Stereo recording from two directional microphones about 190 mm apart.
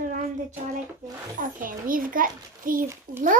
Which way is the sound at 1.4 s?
45° right (ahead or behind).